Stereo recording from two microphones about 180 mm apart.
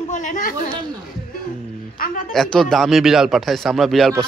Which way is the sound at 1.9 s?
50° left (ahead or behind).